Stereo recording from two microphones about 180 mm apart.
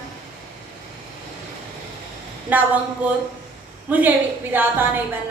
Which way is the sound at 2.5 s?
10° right (ahead or behind).